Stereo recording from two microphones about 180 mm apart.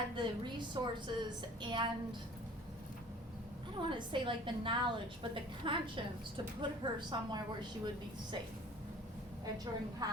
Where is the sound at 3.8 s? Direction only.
25° right (ahead or behind).